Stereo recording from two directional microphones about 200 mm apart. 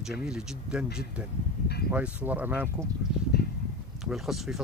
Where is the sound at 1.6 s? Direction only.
50° left (ahead or behind).